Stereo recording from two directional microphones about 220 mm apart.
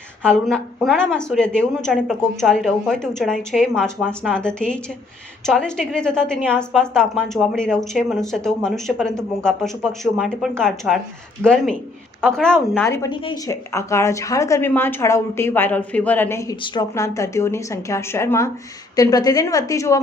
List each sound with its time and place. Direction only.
0.2 s a woman's voice: 5° left (ahead or behind)